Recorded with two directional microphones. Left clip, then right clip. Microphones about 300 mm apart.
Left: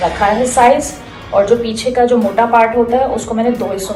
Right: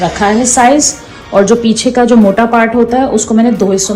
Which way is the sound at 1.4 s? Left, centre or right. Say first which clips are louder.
Right 3 dB; right.